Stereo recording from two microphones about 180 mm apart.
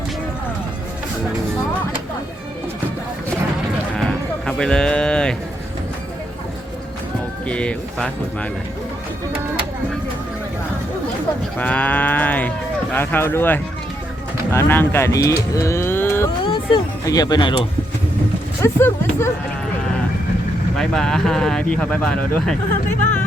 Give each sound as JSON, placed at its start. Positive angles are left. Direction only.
{"t": 4.4, "sound": "music", "side_deg": 5}
{"t": 7.4, "sound": "speech", "side_deg": 5}
{"t": 11.5, "sound": "speech", "side_deg": 10}
{"t": 16.4, "sound": "speech", "side_deg": 25}
{"t": 20.7, "sound": "speech", "side_deg": 5}